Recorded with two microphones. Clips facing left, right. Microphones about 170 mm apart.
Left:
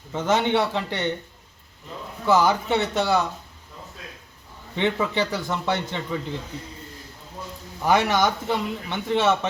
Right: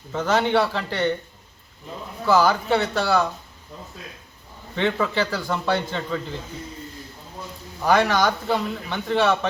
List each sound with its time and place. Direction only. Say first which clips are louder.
0.1 s speech: right 1 dB; 20° left (ahead or behind)
2.2 s speech: right 1 dB; 20° left (ahead or behind)
4.7 s speech: right 1 dB; 20° left (ahead or behind)
7.9 s speech: right 1 dB; 20° left (ahead or behind)